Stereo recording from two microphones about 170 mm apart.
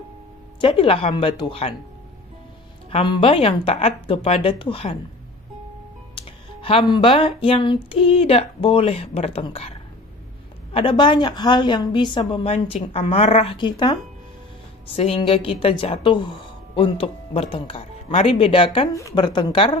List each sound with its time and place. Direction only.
0.6 s speech: 30° left (ahead or behind)
2.9 s speech: 30° left (ahead or behind)
6.1 s a woman's voice: 35° left (ahead or behind)
15.0 s a woman's voice: 35° left (ahead or behind)